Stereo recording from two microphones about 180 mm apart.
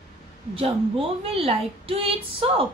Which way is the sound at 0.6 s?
30° right (ahead or behind).